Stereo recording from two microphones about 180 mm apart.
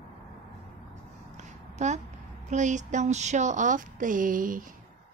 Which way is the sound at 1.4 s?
40° right (ahead or behind).